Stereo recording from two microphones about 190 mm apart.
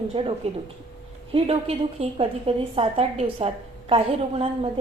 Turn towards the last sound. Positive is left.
turn(degrees=-30)  # may be behind; listen again after turning